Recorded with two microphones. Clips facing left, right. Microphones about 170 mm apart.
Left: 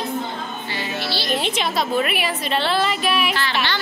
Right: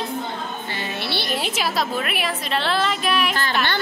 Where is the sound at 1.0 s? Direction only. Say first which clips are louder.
Left 1 dB; 60° right (ahead or behind).